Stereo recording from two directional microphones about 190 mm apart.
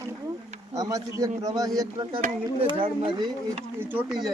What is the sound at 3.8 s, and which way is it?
Speech, 10° right (ahead or behind).